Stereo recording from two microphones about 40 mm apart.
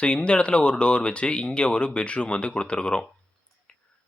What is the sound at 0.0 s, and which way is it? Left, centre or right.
Speech, left.